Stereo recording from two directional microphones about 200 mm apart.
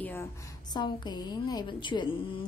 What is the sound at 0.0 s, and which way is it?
A woman's voice, 10° left (ahead or behind).